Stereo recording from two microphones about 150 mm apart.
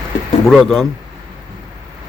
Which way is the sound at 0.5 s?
Centre (ahead or behind).